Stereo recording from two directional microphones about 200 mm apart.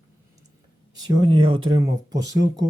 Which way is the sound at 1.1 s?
20° right (ahead or behind).